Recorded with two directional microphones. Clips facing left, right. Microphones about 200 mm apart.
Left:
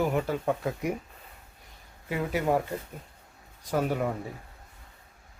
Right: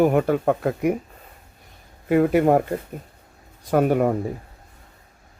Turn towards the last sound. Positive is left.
turn(degrees=-55)  # may be behind; listen again after turning